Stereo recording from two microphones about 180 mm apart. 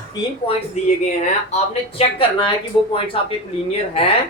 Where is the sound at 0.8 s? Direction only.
35° left (ahead or behind).